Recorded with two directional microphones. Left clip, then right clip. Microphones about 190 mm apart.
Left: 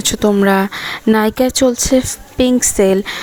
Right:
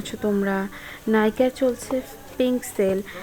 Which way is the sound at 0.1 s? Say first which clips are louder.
Left 10 dB; 30° left (ahead or behind).